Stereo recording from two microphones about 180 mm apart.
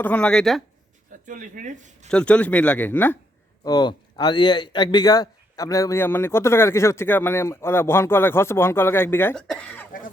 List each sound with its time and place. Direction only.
0.0 s speech: 10° left (ahead or behind)
1.3 s speech: 45° right (ahead or behind)
2.0 s a man's voice: 5° left (ahead or behind)
3.6 s a man's voice: 20° left (ahead or behind); by 9.8 s 5° left (ahead or behind)